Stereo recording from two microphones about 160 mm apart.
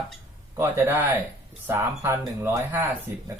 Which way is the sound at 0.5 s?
15° right (ahead or behind).